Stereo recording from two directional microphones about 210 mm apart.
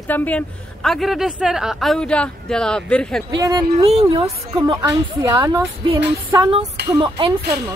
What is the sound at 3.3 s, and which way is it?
Speech, 20° right (ahead or behind).